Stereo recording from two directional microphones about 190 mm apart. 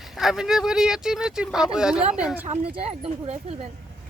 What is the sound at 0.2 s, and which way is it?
A woman's voice, 5° right (ahead or behind).